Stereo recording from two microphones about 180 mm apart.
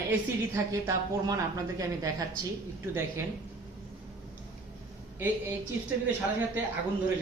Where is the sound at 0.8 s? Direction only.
20° right (ahead or behind).